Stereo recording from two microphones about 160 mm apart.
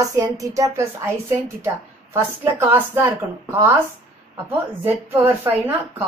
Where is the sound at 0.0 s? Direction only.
20° right (ahead or behind).